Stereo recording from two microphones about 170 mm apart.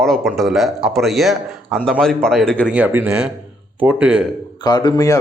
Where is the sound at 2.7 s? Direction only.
10° right (ahead or behind).